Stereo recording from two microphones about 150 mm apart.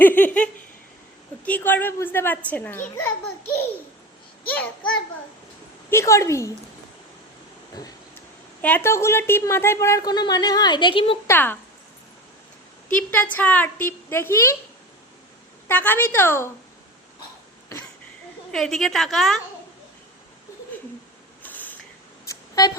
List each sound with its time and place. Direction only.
0.0 s a woman's voice: 10° left (ahead or behind)
5.9 s a woman's voice: 20° left (ahead or behind)
7.8 s a woman's voice: 25° left (ahead or behind)
8.6 s a woman's voice: 15° left (ahead or behind); by 11.2 s 35° left (ahead or behind)
11.3 s a woman's voice: 15° left (ahead or behind)
12.9 s a woman's voice: 10° left (ahead or behind)
15.6 s a woman's voice: 15° left (ahead or behind)
18.5 s a woman's voice: centre (ahead or behind)
21.4 s mechanisms: 10° left (ahead or behind)
22.3 s a sound: 25° left (ahead or behind)